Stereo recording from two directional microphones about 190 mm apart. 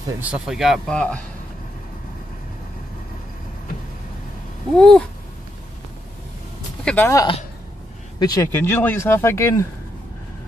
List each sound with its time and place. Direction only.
0.2 s a man's voice: 5° right (ahead or behind)
4.7 s a man's voice: 5° left (ahead or behind)
6.8 s speech: 5° left (ahead or behind)
7.1 s speech: 20° left (ahead or behind)